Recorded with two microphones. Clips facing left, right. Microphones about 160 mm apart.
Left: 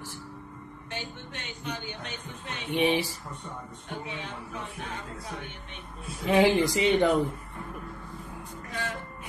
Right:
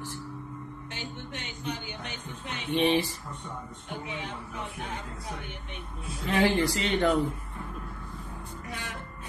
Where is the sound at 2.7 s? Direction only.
10° left (ahead or behind).